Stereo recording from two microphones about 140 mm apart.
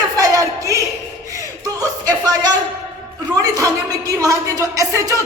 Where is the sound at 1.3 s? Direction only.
25° right (ahead or behind).